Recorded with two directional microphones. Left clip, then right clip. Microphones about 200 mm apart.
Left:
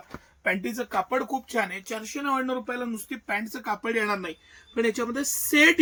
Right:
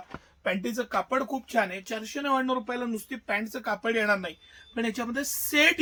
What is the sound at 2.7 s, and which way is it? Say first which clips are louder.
Speech: even; 45° right (ahead or behind).